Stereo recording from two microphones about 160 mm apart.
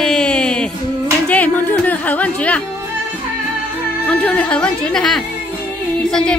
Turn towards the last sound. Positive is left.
turn(degrees=5)  # may be behind; listen again after turning